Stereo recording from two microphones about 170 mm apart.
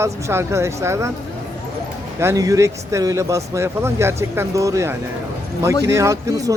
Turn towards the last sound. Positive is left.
turn(degrees=-20)  # may be behind; listen again after turning